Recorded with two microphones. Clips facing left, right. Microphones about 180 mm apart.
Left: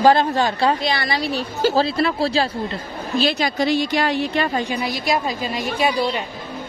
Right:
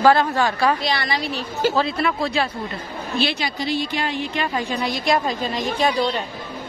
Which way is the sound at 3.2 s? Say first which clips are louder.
Left 7 dB; 40° left (ahead or behind).